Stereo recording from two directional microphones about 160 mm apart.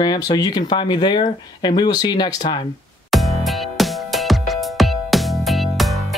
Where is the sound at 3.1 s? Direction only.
Centre (ahead or behind).